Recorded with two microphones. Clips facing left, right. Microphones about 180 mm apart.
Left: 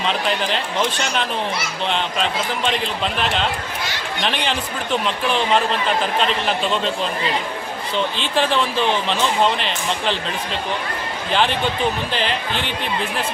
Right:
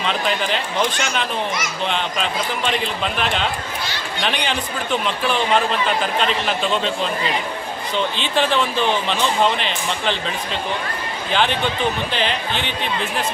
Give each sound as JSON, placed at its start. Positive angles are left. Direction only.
{"t": 0.0, "sound": "speech", "side_deg": 0}
{"t": 1.9, "sound": "speech", "side_deg": 0}
{"t": 6.1, "sound": "speech", "side_deg": 0}
{"t": 7.9, "sound": "speech", "side_deg": 0}
{"t": 11.3, "sound": "speech", "side_deg": 0}